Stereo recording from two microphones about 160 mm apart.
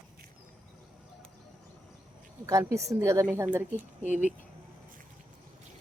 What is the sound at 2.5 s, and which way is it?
Speech, 20° right (ahead or behind).